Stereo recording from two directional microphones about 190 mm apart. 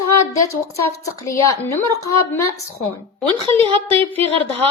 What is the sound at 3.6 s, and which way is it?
Speech, 30° right (ahead or behind).